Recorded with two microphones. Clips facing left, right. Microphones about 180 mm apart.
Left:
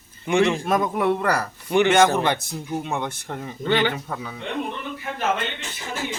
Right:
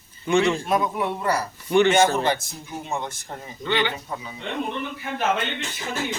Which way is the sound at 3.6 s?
45° left (ahead or behind).